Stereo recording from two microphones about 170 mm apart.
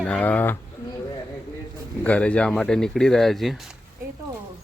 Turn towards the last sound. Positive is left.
turn(degrees=0)  # may be behind; listen again after turning